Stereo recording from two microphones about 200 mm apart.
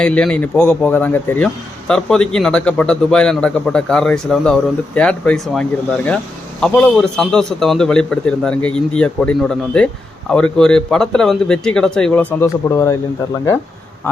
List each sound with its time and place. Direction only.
0.0 s a man's voice: 5° left (ahead or behind)